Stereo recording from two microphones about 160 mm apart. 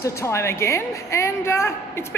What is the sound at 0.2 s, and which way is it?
A woman's voice, 15° left (ahead or behind).